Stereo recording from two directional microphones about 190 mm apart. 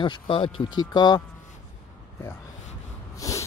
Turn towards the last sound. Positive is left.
turn(degrees=15)  # may be behind; listen again after turning